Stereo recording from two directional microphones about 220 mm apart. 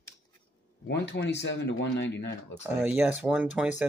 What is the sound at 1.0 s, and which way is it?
Speech, 55° left (ahead or behind).